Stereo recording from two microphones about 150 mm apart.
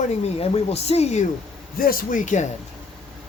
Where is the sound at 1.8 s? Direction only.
75° left (ahead or behind); by 2.4 s 60° left (ahead or behind).